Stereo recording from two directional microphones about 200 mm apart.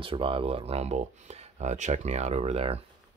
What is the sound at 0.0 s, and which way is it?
Speech, 25° right (ahead or behind).